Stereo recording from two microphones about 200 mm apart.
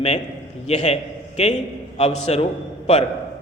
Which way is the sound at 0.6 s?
35° left (ahead or behind).